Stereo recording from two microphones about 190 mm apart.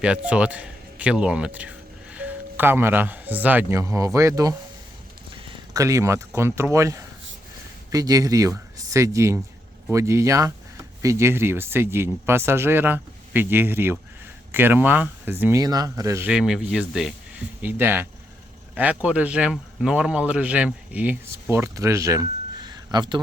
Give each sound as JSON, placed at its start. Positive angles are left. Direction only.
{"t": 0.0, "sound": "speech", "side_deg": -5}